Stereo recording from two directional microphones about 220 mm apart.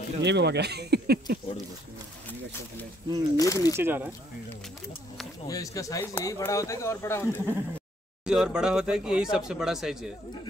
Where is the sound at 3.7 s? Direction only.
10° right (ahead or behind).